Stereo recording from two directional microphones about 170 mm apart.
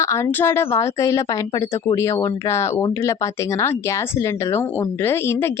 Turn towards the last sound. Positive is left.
turn(degrees=15)  # may be behind; listen again after turning